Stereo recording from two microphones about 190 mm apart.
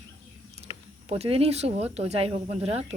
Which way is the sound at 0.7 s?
30° left (ahead or behind).